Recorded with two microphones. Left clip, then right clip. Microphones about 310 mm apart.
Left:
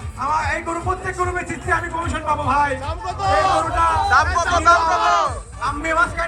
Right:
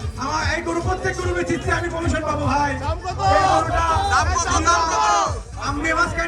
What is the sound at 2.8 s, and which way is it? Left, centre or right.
Speech, right.